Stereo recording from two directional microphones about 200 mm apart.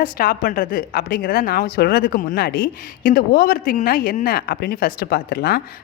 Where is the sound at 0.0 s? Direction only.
45° left (ahead or behind).